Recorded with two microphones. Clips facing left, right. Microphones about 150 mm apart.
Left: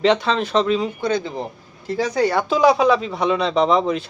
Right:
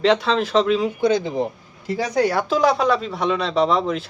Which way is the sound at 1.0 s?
15° right (ahead or behind).